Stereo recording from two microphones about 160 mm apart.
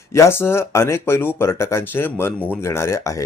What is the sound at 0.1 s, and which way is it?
Speech, 15° left (ahead or behind).